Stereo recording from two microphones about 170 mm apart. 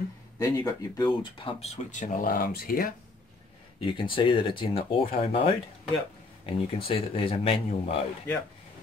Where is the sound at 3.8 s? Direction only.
30° left (ahead or behind).